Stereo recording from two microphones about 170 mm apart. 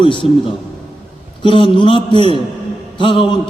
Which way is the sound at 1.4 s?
30° left (ahead or behind).